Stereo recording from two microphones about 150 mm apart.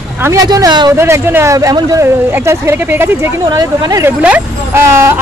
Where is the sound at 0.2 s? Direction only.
20° right (ahead or behind).